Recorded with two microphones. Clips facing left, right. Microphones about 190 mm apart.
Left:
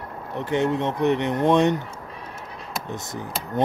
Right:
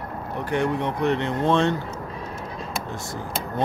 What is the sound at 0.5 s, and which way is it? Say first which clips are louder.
Speech: left 2 dB; 20° left (ahead or behind).